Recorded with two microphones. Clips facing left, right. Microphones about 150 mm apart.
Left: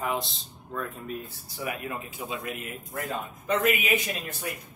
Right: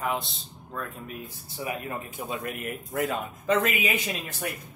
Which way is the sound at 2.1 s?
55° right (ahead or behind).